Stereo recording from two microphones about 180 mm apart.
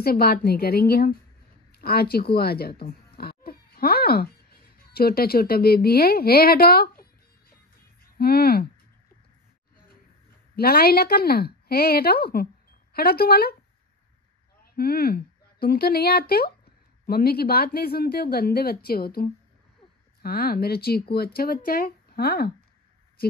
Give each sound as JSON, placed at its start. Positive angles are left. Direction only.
{"t": 0.0, "sound": "speech", "side_deg": 60}
{"t": 8.2, "sound": "speech", "side_deg": 60}
{"t": 10.5, "sound": "speech", "side_deg": 60}
{"t": 14.6, "sound": "speech", "side_deg": 60}